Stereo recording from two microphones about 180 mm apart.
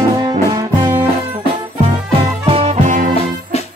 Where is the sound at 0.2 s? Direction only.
25° right (ahead or behind).